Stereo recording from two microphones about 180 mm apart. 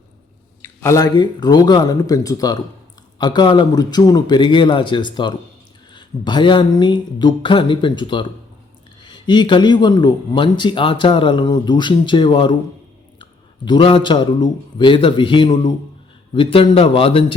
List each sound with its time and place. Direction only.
0.6 s speech: 15° left (ahead or behind)
13.7 s speech: 30° left (ahead or behind)